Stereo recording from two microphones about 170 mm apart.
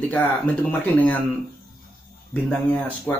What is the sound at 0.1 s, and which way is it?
Speech, 10° left (ahead or behind).